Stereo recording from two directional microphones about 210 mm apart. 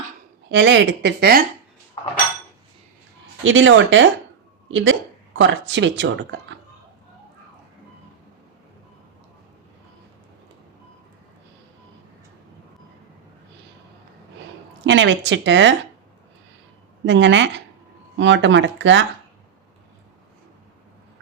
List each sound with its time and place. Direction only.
0.5 s speech: 60° right (ahead or behind)
3.4 s speech: 65° right (ahead or behind)
14.8 s speech: 60° right (ahead or behind)
17.1 s speech: 60° right (ahead or behind)